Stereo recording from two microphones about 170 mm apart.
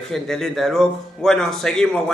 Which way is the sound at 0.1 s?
Centre (ahead or behind).